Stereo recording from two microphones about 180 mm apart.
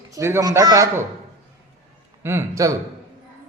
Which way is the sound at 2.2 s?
15° right (ahead or behind).